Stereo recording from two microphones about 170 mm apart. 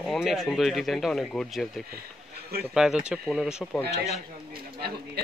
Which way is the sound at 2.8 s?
5° right (ahead or behind).